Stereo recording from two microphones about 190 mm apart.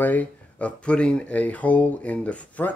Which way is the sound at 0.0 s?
10° left (ahead or behind).